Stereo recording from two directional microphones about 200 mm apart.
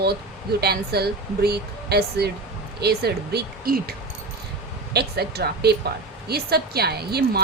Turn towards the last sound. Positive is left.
turn(degrees=-50)  # may be behind; listen again after turning